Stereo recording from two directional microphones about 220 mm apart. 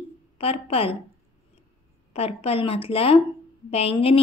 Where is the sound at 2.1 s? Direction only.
25° left (ahead or behind).